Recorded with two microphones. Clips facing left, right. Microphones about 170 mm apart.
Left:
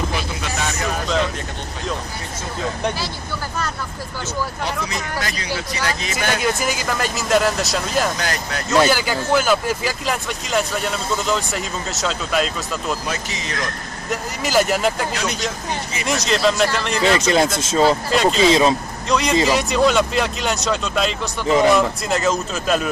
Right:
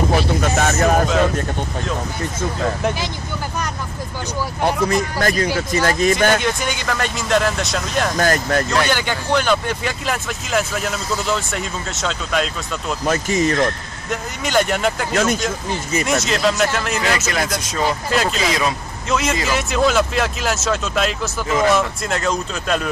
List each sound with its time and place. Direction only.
0.1 s a sound: 50° right (ahead or behind)
4.6 s speech: 50° right (ahead or behind)
6.4 s speech: 5° left (ahead or behind)
8.2 s speech: 50° right (ahead or behind)
8.8 s speech: 5° left (ahead or behind)
13.0 s speech: 50° right (ahead or behind)
14.4 s speech: 5° left (ahead or behind)
15.1 s speech: 50° right (ahead or behind)
16.1 s speech: centre (ahead or behind)
17.0 s speech: 25° left (ahead or behind)
18.1 s speech: centre (ahead or behind)
18.4 s speech: 25° left (ahead or behind)
19.0 s speech: 5° right (ahead or behind)